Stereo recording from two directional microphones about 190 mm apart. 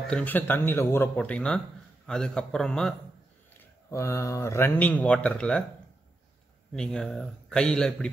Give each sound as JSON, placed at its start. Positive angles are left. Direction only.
{"t": 0.1, "sound": "a man's voice", "side_deg": 10}
{"t": 3.5, "sound": "speech", "side_deg": 15}
{"t": 6.7, "sound": "a man's voice", "side_deg": 5}